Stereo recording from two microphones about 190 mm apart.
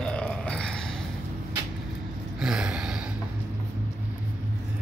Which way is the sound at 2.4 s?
5° right (ahead or behind).